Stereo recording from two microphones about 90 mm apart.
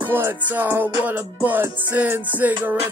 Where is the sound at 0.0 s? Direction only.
25° right (ahead or behind).